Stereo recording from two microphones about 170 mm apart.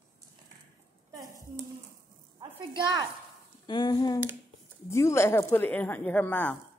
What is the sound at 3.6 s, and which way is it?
Humming, 25° left (ahead or behind).